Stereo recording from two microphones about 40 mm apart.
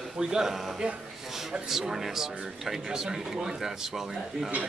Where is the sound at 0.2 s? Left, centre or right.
Centre.